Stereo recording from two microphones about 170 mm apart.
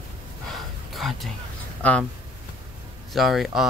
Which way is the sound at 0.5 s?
Centre (ahead or behind).